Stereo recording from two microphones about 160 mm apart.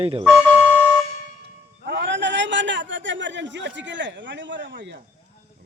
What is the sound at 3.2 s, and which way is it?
Speech, 90° right.